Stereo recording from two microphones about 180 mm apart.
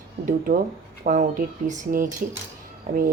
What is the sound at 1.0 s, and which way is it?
A woman's voice, 45° right (ahead or behind).